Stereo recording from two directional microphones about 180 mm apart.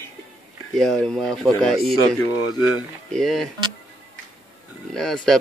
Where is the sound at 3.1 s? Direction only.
Centre (ahead or behind).